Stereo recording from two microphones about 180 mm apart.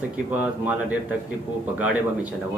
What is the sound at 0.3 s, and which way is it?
Speech, 10° right (ahead or behind).